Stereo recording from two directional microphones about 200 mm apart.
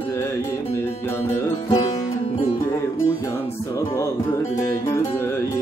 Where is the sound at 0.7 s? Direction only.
10° left (ahead or behind).